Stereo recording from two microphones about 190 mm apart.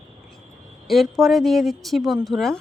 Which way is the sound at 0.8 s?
Centre (ahead or behind).